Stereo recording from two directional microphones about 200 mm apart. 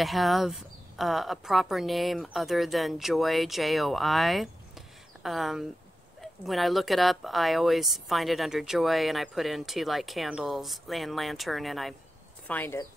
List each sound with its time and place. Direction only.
0.0 s speech: centre (ahead or behind)